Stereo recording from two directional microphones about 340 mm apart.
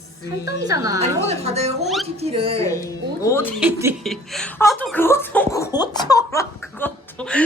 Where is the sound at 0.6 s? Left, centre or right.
Centre.